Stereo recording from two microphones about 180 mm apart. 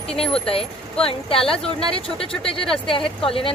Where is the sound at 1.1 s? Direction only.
30° left (ahead or behind).